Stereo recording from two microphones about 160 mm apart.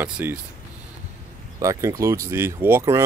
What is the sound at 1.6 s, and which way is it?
Speech, 20° right (ahead or behind).